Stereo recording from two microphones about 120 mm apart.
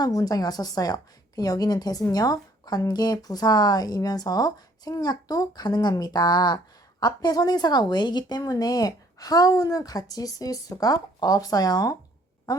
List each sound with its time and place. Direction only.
0.0 s a woman's voice: 30° left (ahead or behind)